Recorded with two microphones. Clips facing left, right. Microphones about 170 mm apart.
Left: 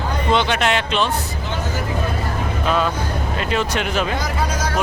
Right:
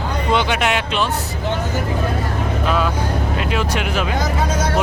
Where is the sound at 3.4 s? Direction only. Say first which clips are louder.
Left 3 dB; 5° right (ahead or behind).